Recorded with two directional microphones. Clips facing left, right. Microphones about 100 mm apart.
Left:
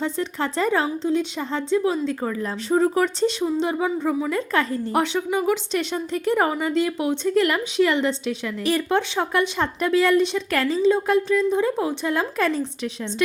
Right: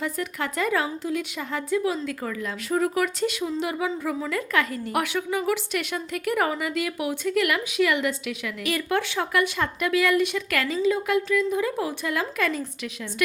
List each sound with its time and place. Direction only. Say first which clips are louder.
0.0 s a woman's voice: left 4 dB; 30° left (ahead or behind)